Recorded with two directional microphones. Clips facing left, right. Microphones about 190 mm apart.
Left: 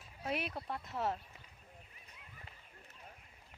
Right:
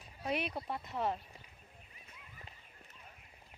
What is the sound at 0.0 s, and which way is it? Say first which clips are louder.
Speech: right 2 dB; centre (ahead or behind).